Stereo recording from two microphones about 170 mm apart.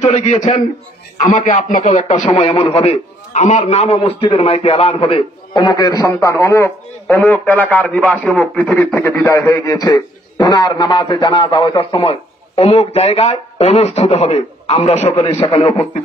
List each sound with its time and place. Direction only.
0.0 s a man's voice: 40° left (ahead or behind)